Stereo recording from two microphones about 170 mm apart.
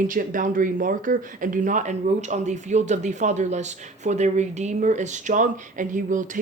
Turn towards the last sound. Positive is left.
turn(degrees=-50)  # may be behind; listen again after turning